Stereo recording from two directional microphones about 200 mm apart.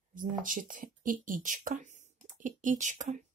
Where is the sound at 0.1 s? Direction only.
40° right (ahead or behind).